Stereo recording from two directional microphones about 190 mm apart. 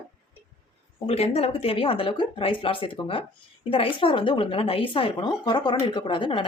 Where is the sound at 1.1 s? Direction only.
35° left (ahead or behind).